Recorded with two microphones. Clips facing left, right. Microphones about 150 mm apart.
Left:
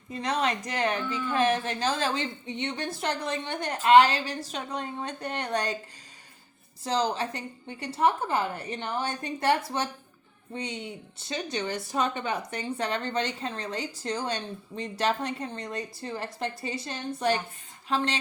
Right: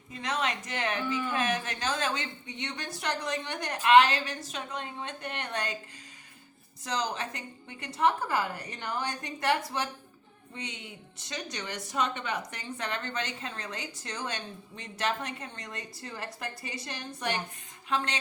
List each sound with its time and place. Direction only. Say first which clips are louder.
0.1 s a woman's voice: left 4 dB; 35° left (ahead or behind)
1.0 s speech: right 1 dB; 10° right (ahead or behind)
1.3 s a woman's voice: left 5 dB; 35° left (ahead or behind)
6.8 s a woman's voice: left 5 dB; 30° left (ahead or behind)